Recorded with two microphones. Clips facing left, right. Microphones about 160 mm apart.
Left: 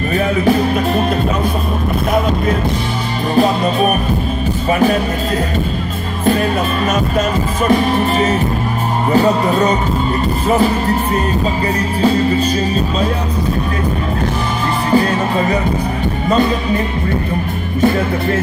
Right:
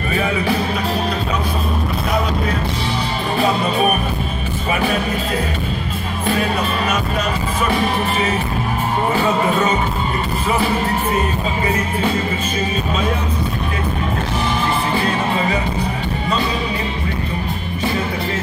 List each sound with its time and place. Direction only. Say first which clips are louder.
0.1 s music: left 5 dB; 45° left (ahead or behind)
9.1 s music: left 7 dB; 40° left (ahead or behind)
14.9 s music: left 5 dB; 40° left (ahead or behind)
16.3 s speech: left 7 dB; 50° left (ahead or behind)